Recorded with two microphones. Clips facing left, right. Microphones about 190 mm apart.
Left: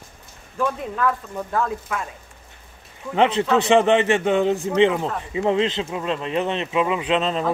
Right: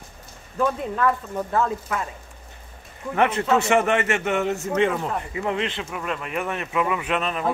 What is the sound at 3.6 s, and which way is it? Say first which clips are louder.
Speech: left 4 dB; 20° left (ahead or behind).